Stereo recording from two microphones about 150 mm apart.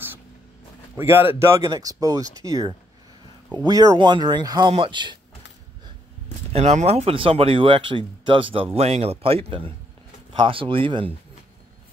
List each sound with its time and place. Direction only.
0.9 s speech: 15° right (ahead or behind); by 5.2 s 30° right (ahead or behind)
6.5 s speech: 50° right (ahead or behind)